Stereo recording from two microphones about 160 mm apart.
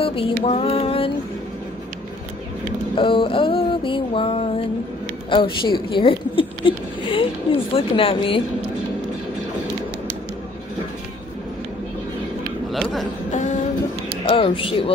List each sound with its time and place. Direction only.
0.0 s music: 35° left (ahead or behind)
3.0 s a sound: 35° left (ahead or behind)
5.3 s speech: 30° left (ahead or behind)
12.7 s a sound: centre (ahead or behind)
13.3 s vehicle: 50° left (ahead or behind)
14.2 s speech: 35° left (ahead or behind)